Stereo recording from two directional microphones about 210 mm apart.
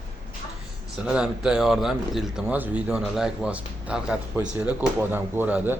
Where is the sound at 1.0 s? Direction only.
5° right (ahead or behind).